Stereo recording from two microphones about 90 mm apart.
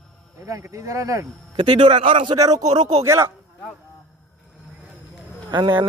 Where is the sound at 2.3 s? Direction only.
45° right (ahead or behind).